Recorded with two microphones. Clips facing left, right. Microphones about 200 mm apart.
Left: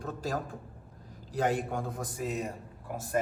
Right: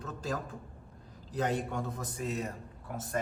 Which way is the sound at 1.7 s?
5° left (ahead or behind).